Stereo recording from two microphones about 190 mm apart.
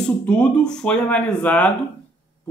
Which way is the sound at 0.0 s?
5° left (ahead or behind).